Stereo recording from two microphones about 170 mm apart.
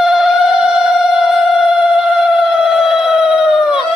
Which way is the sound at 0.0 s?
Centre (ahead or behind).